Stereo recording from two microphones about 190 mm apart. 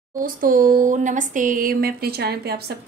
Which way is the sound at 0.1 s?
45° right (ahead or behind).